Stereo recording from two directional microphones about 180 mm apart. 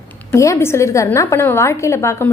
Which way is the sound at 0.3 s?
15° left (ahead or behind).